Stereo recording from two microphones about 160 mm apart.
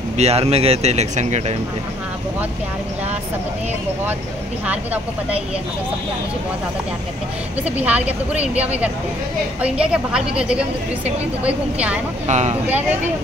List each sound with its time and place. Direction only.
0.2 s speech: 40° right (ahead or behind)
4.6 s a woman's voice: 10° right (ahead or behind)
7.6 s a woman's voice: 10° right (ahead or behind)
12.3 s speech: 45° right (ahead or behind)